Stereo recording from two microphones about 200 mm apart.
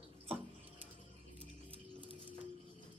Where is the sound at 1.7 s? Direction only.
25° right (ahead or behind).